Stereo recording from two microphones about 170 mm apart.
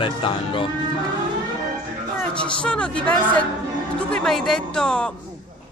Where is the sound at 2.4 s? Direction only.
5° left (ahead or behind).